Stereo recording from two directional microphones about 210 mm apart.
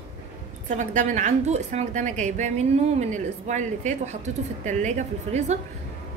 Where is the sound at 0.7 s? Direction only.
35° right (ahead or behind).